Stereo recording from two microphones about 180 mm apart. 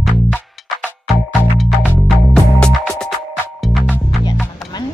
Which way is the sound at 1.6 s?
Centre (ahead or behind).